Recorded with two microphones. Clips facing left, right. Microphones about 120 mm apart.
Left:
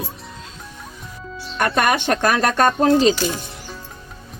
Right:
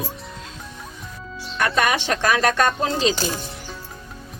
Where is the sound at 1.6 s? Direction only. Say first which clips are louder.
Left 2 dB; 50° left (ahead or behind).